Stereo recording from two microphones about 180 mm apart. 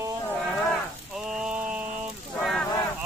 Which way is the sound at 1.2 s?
5° right (ahead or behind).